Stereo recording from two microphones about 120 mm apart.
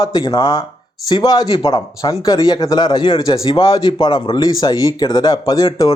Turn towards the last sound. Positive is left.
turn(degrees=35)  # may be behind; listen again after turning